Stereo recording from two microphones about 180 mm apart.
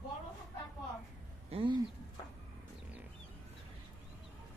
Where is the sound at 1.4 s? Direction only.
30° right (ahead or behind).